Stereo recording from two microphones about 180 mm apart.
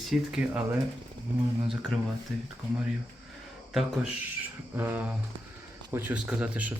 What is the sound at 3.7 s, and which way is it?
Speech, centre (ahead or behind).